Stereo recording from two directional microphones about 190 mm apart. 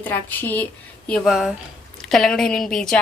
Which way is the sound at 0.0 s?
10° left (ahead or behind).